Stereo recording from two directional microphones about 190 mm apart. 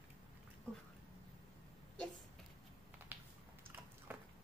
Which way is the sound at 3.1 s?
10° right (ahead or behind).